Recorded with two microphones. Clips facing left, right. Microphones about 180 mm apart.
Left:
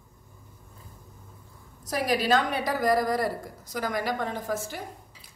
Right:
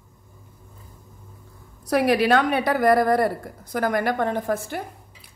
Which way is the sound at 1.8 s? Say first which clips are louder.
Right 7 dB; 65° right (ahead or behind).